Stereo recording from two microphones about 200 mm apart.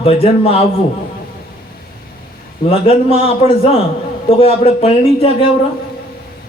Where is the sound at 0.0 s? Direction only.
30° left (ahead or behind).